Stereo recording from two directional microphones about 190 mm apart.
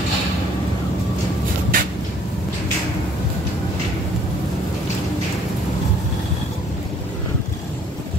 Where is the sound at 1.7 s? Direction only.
45° right (ahead or behind).